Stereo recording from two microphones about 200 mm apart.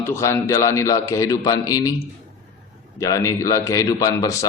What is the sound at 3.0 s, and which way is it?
A man's voice, 15° left (ahead or behind).